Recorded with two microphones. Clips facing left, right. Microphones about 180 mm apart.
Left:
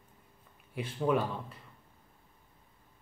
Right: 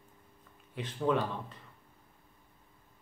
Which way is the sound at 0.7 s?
10° left (ahead or behind).